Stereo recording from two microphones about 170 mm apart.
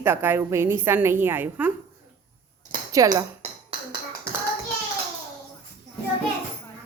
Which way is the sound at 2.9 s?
20° right (ahead or behind).